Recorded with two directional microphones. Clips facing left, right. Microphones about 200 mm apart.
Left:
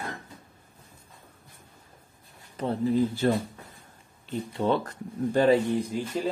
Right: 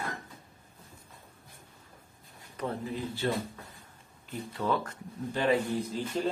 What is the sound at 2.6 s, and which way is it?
Speech, 30° left (ahead or behind).